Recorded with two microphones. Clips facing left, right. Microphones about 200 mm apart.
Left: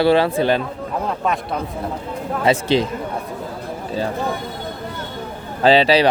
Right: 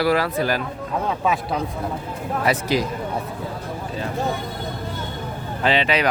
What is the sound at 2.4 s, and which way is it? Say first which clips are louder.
Speech: left 5 dB; 25° left (ahead or behind).